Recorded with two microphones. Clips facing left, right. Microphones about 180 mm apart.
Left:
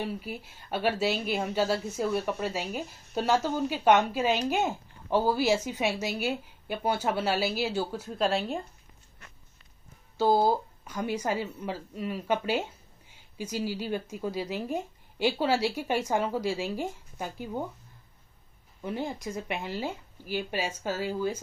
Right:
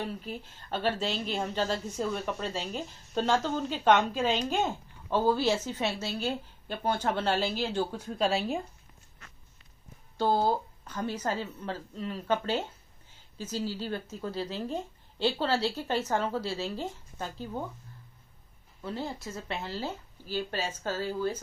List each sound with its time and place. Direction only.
0.0 s a woman's voice: 10° left (ahead or behind)
10.1 s a woman's voice: 10° left (ahead or behind)
18.8 s a woman's voice: 15° left (ahead or behind)